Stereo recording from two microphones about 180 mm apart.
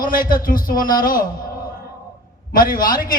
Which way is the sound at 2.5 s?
50° left (ahead or behind).